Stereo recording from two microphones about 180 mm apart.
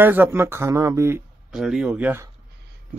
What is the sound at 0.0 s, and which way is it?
Speech, 10° right (ahead or behind).